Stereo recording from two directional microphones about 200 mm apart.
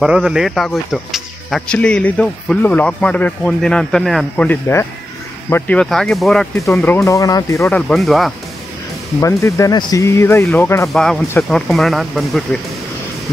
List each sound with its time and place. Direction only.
0.0 s speech: 5° right (ahead or behind)
6.6 s speech: 10° left (ahead or behind)
7.9 s speech: centre (ahead or behind)
9.2 s speech: 15° left (ahead or behind)
11.2 s speech: 10° left (ahead or behind)
11.6 s speech: centre (ahead or behind)